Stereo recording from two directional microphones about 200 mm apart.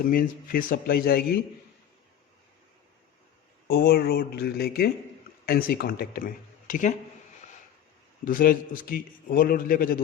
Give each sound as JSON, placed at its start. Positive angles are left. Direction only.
{"t": 0.0, "sound": "a man's voice", "side_deg": 45}
{"t": 3.7, "sound": "a man's voice", "side_deg": 50}
{"t": 8.2, "sound": "a man's voice", "side_deg": 45}